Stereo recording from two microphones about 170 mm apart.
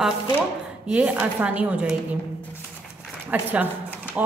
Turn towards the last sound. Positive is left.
turn(degrees=-5)  # may be behind; listen again after turning